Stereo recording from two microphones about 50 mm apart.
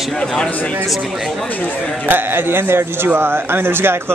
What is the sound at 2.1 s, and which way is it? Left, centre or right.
Speech, right.